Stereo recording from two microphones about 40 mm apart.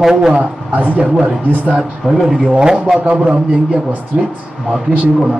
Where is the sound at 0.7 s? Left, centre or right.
Right.